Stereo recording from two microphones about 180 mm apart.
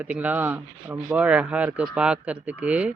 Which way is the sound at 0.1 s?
10° right (ahead or behind).